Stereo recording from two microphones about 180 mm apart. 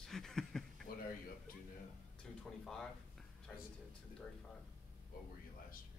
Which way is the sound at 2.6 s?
5° left (ahead or behind).